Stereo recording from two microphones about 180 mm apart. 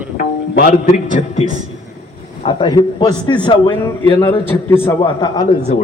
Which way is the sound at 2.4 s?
30° left (ahead or behind).